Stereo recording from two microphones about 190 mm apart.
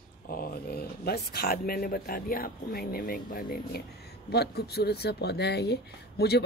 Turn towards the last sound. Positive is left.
turn(degrees=60)  # may be behind; listen again after turning